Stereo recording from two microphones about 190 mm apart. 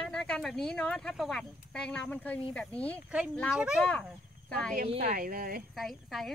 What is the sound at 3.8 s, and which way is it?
Speech, 5° left (ahead or behind).